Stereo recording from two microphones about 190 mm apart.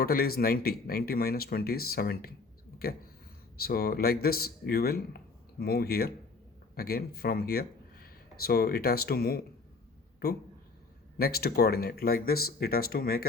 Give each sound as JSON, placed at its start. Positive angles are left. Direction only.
{"t": 0.0, "sound": "a man's voice", "side_deg": 55}